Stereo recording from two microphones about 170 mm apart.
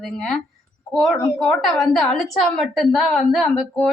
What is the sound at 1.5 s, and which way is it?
A woman's voice, centre (ahead or behind).